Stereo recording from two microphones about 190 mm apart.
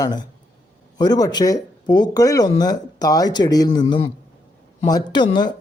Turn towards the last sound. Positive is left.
turn(degrees=25)  # may be behind; listen again after turning